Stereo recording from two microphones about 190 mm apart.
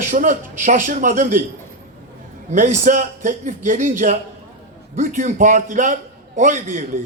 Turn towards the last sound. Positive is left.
turn(degrees=-40)  # may be behind; listen again after turning